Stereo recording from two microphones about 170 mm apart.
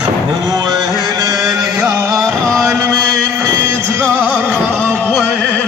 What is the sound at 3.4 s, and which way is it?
Music, 15° right (ahead or behind).